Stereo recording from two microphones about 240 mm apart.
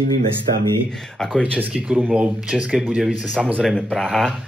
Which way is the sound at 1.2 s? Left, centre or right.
Centre.